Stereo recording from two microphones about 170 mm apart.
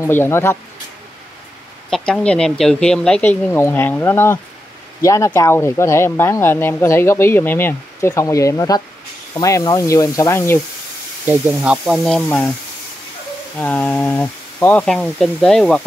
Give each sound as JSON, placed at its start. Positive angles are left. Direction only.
{"t": 0.0, "sound": "speech", "side_deg": 15}
{"t": 1.9, "sound": "speech", "side_deg": 5}
{"t": 11.2, "sound": "speech", "side_deg": -5}
{"t": 13.6, "sound": "speech", "side_deg": 10}